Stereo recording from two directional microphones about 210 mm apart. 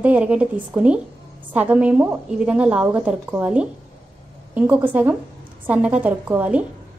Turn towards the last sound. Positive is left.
turn(degrees=-5)  # may be behind; listen again after turning